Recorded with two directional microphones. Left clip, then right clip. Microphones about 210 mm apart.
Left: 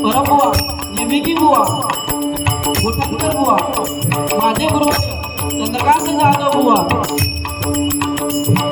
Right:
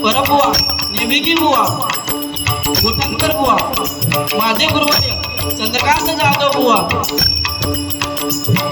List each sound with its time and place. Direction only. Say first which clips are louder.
0.0 s music: even; 45° left (ahead or behind)
2.6 s music: right 3 dB; 40° left (ahead or behind)